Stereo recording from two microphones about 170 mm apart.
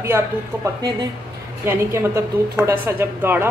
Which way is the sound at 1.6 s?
15° right (ahead or behind).